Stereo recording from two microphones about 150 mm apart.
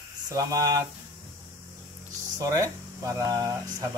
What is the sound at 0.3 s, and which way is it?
Speech, 20° right (ahead or behind).